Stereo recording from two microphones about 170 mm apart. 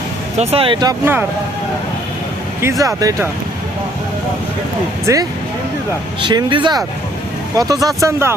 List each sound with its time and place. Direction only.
0.3 s speech: 35° right (ahead or behind)
2.6 s speech: 15° right (ahead or behind)
5.1 s speech: 15° right (ahead or behind)
6.2 s speech: 30° right (ahead or behind)